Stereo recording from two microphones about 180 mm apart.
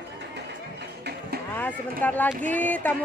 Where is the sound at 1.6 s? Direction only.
10° left (ahead or behind).